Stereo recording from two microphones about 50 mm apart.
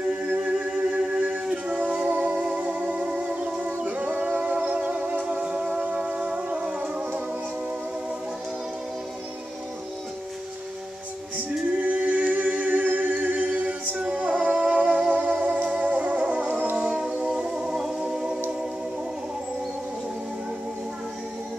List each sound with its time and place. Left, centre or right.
0.3 s humming: right
0.6 s music: centre
11.8 s a capella: right
15.1 s music: right; by 18.4 s centre